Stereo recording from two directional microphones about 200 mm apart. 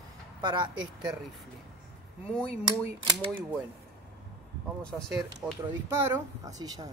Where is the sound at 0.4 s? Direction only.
25° right (ahead or behind).